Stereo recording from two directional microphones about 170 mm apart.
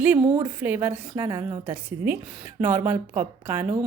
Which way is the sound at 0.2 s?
35° right (ahead or behind).